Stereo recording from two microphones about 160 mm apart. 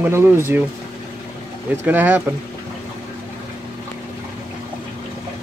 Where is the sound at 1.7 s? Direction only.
10° right (ahead or behind).